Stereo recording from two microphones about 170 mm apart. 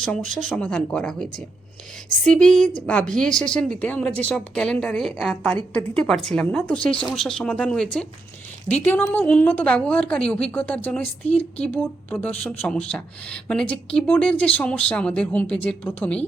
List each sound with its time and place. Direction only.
0.0 s a woman's voice: centre (ahead or behind)
11.3 s speech: 35° left (ahead or behind)
11.6 s speech: 10° left (ahead or behind)